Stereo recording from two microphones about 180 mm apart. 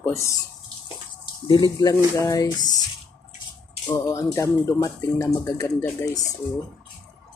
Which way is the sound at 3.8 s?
20° left (ahead or behind).